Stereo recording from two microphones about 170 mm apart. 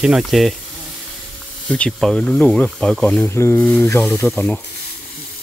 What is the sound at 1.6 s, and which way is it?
Speech, 5° left (ahead or behind).